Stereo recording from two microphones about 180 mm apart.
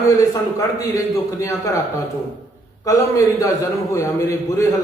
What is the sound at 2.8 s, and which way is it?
A man's voice, 20° left (ahead or behind).